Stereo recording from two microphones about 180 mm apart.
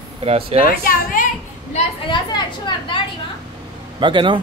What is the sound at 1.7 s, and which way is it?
Speech, 30° left (ahead or behind).